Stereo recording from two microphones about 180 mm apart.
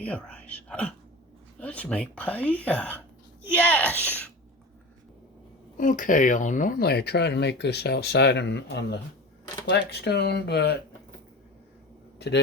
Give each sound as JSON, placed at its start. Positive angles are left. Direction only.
{"t": 0.0, "sound": "speech", "side_deg": 5}
{"t": 5.7, "sound": "speech", "side_deg": 45}